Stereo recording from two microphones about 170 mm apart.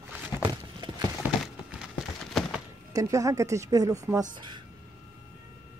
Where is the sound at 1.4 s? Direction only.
5° right (ahead or behind).